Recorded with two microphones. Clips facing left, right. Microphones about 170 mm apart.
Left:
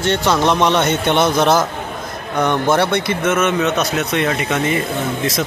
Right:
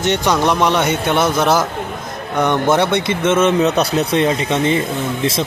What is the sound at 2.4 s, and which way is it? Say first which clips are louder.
Speech: right 1 dB; 20° right (ahead or behind).